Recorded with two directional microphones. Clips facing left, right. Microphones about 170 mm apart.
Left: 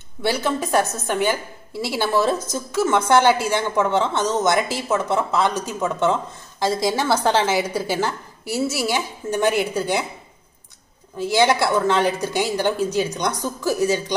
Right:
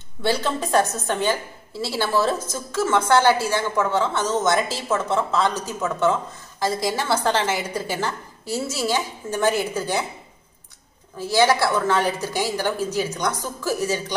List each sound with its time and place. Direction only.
0.3 s a woman's voice: 10° left (ahead or behind)
11.1 s a woman's voice: 20° left (ahead or behind)